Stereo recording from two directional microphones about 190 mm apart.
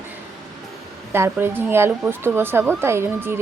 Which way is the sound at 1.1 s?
10° right (ahead or behind).